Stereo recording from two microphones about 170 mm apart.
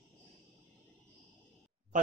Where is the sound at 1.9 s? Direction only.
50° right (ahead or behind).